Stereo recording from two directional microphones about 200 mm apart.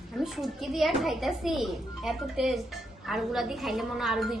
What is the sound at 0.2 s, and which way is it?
Speech, centre (ahead or behind).